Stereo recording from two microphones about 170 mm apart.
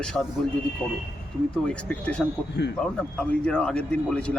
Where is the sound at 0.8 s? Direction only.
10° right (ahead or behind).